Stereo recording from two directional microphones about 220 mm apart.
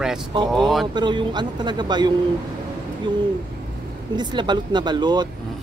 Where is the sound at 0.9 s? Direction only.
20° right (ahead or behind).